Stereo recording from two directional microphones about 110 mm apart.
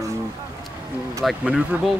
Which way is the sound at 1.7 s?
15° right (ahead or behind).